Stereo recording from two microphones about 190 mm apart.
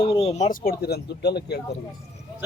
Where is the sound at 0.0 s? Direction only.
30° left (ahead or behind); by 1.5 s 60° left (ahead or behind).